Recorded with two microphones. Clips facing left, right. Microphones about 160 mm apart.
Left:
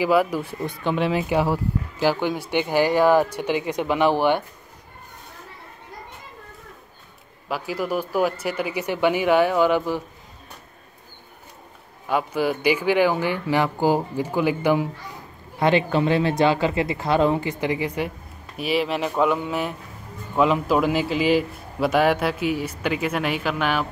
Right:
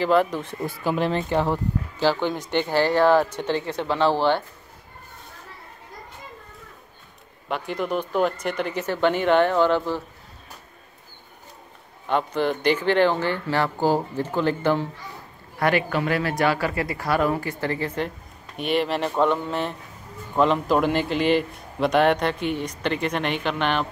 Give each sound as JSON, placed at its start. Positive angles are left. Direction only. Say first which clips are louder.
{"t": 0.0, "sound": "speech", "louder": "left 1 dB", "side_deg": 10}
{"t": 0.6, "sound": "speech", "louder": "right 1 dB", "side_deg": -5}
{"t": 7.4, "sound": "speech", "louder": "left 1 dB", "side_deg": 5}
{"t": 12.1, "sound": "speech", "louder": "even", "side_deg": 5}
{"t": 15.6, "sound": "a man's voice", "louder": "left 3 dB", "side_deg": 25}